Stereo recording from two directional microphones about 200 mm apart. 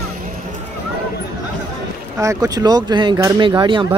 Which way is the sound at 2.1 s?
15° right (ahead or behind).